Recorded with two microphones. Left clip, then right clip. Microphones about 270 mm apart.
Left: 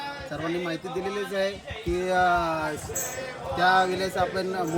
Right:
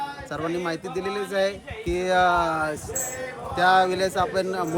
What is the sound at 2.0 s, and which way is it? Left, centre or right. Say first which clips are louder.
Speech: right 3 dB; centre.